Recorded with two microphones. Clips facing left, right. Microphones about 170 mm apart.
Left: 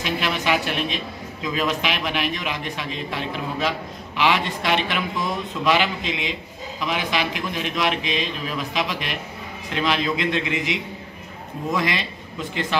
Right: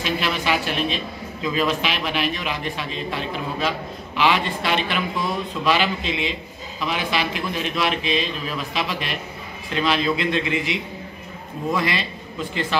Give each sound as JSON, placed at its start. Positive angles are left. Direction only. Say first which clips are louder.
{"t": 0.0, "sound": "a man's voice", "louder": "even", "side_deg": 15}